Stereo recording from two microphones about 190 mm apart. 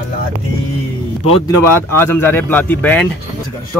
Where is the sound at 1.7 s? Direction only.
10° left (ahead or behind).